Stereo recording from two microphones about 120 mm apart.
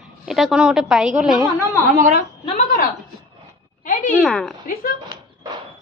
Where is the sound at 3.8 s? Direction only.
90° left.